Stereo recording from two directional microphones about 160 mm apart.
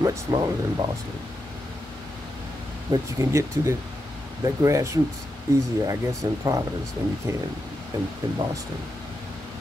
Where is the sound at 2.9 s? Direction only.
20° right (ahead or behind).